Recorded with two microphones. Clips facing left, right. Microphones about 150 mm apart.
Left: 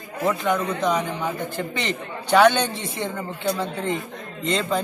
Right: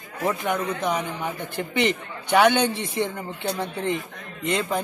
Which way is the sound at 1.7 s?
15° right (ahead or behind).